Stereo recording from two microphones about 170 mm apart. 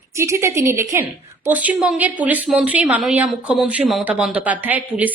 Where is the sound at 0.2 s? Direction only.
15° right (ahead or behind).